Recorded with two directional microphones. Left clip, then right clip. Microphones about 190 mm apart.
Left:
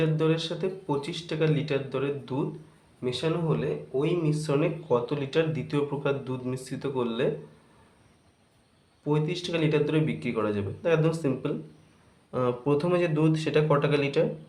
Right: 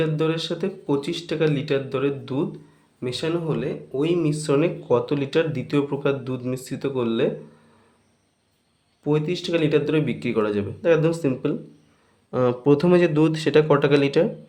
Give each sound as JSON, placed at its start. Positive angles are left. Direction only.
{"t": 0.0, "sound": "speech", "side_deg": -35}
{"t": 9.0, "sound": "speech", "side_deg": -35}